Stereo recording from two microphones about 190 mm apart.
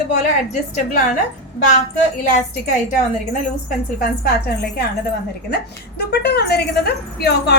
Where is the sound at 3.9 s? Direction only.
55° left (ahead or behind).